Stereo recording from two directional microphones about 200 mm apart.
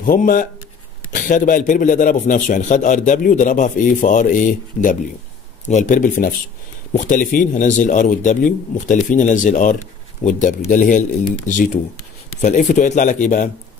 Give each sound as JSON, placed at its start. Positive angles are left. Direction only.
{"t": 0.0, "sound": "a man's voice", "side_deg": 45}